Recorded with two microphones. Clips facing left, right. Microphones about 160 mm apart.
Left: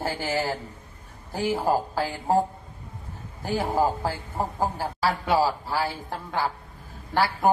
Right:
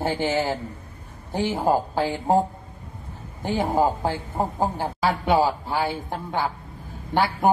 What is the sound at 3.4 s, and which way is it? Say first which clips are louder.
A man's voice: right 2 dB; 20° right (ahead or behind).